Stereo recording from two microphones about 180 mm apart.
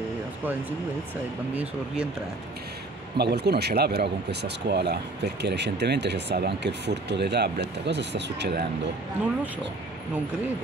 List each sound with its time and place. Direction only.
1.5 s speech: 5° right (ahead or behind)
3.2 s speech: 65° right (ahead or behind)